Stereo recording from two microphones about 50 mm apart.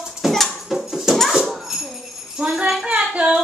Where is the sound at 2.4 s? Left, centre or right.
Centre.